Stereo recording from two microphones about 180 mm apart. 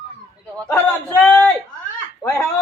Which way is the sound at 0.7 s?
10° left (ahead or behind).